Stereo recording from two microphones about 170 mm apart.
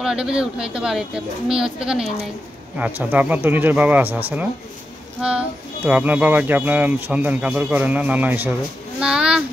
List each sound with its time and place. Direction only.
0.0 s speech: 5° right (ahead or behind)
5.2 s speech: 5° right (ahead or behind)